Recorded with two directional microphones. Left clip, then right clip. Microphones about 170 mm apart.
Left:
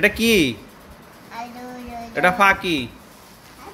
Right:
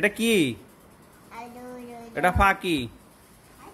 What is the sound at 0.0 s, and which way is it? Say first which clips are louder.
Speech: left 6 dB; 15° right (ahead or behind).